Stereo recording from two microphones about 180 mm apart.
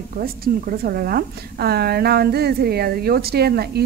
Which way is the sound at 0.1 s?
55° right (ahead or behind).